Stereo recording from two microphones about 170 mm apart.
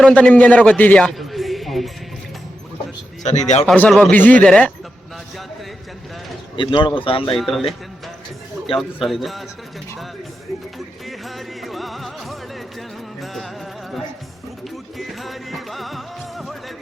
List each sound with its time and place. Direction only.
0.0 s a man's voice: 5° left (ahead or behind)
3.2 s speech: 40° left (ahead or behind)
3.7 s a man's voice: centre (ahead or behind)
6.6 s speech: 30° left (ahead or behind)
7.3 s a man's voice: centre (ahead or behind)
9.0 s a man's voice: centre (ahead or behind)
11.0 s music: centre (ahead or behind)
14.9 s music: centre (ahead or behind)